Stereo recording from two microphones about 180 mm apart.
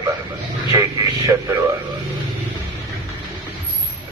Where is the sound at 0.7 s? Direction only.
20° right (ahead or behind).